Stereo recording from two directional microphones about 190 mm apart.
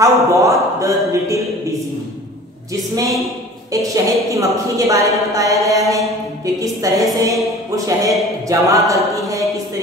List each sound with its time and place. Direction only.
0.0 s speech: 15° right (ahead or behind)
2.7 s a woman's voice: 15° right (ahead or behind)
7.2 s a sound: 15° right (ahead or behind)